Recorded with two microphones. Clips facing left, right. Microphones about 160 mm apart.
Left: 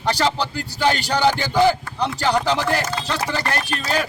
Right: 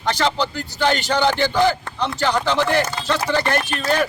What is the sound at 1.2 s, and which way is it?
Speech, 5° left (ahead or behind).